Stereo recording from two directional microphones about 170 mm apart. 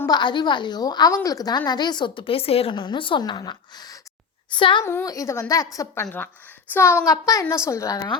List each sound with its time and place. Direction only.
0.0 s a woman's voice: 25° left (ahead or behind)
4.8 s a woman's voice: 15° left (ahead or behind)